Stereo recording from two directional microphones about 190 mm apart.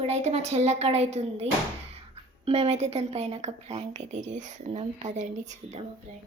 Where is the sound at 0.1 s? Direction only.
35° right (ahead or behind).